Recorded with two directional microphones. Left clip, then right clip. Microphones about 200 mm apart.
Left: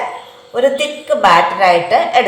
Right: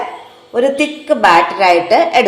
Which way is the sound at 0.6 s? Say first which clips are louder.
Even; 45° right (ahead or behind).